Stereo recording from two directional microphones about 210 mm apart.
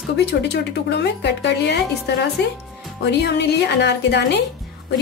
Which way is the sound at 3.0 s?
55° left (ahead or behind).